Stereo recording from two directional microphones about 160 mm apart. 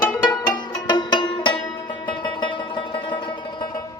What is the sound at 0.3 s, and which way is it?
Music, 25° left (ahead or behind).